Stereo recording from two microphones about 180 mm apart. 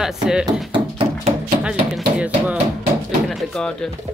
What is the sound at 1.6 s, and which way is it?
A woman's voice, 5° right (ahead or behind).